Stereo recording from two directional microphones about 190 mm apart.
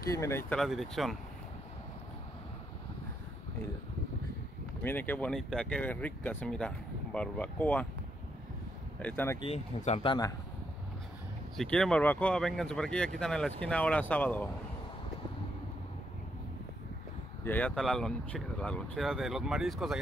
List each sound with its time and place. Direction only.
0.1 s speech: 15° left (ahead or behind)
0.6 s speech: centre (ahead or behind)
4.8 s speech: 10° left (ahead or behind)
9.0 s speech: 10° left (ahead or behind)
9.4 s speech: 35° left (ahead or behind)
11.5 s speech: 5° left (ahead or behind)
17.5 s speech: 5° left (ahead or behind)